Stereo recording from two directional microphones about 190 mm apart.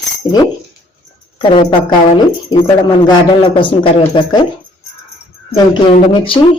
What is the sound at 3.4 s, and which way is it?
Speech, 25° left (ahead or behind).